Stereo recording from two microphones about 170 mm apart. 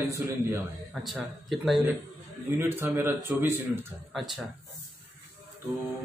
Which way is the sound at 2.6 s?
15° right (ahead or behind).